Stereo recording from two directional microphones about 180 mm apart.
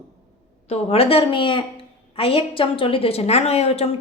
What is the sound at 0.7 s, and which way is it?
A woman's voice, 35° left (ahead or behind).